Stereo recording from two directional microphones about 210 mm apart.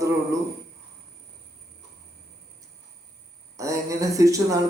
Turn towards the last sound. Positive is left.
turn(degrees=-15)  # may be behind; listen again after turning